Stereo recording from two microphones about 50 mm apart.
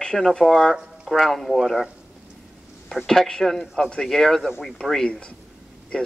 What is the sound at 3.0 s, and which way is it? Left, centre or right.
Speech, centre.